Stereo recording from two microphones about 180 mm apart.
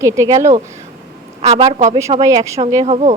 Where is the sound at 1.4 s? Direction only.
35° right (ahead or behind).